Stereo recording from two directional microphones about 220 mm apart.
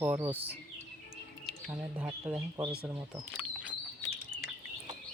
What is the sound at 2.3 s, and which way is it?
Speech, 20° right (ahead or behind).